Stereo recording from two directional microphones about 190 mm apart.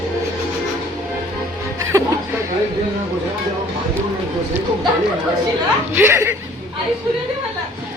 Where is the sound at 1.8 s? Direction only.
15° right (ahead or behind).